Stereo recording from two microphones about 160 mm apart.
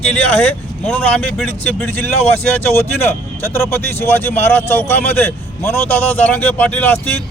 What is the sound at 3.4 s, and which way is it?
Speech, 15° left (ahead or behind).